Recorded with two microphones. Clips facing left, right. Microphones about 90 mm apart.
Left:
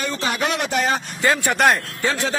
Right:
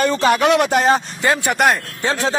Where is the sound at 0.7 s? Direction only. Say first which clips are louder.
Right 6 dB; 35° right (ahead or behind).